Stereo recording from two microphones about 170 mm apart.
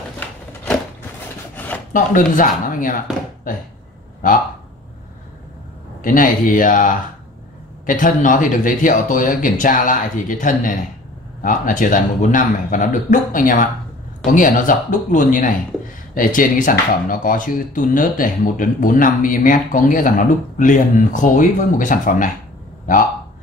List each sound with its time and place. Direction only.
1.5 s filing: 10° left (ahead or behind)
2.0 s speech: 50° left (ahead or behind)
6.0 s speech: 55° left (ahead or behind)